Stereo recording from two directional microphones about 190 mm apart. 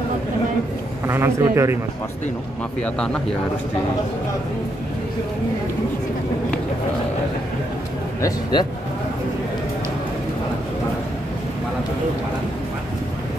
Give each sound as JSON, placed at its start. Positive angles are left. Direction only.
{"t": 1.0, "sound": "a man's voice", "side_deg": -15}
{"t": 2.8, "sound": "speech", "side_deg": 5}
{"t": 8.2, "sound": "speech", "side_deg": 20}